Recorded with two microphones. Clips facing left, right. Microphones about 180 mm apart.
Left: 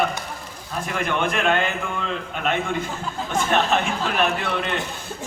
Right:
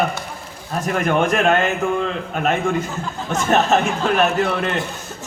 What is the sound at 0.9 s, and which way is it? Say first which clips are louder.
A man's voice: right 6 dB; 45° right (ahead or behind).